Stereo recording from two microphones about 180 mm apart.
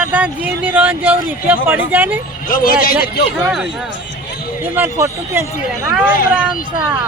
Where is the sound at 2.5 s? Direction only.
50° left (ahead or behind).